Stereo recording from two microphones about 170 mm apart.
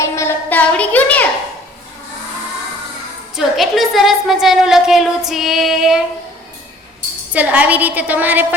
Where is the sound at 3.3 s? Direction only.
Centre (ahead or behind).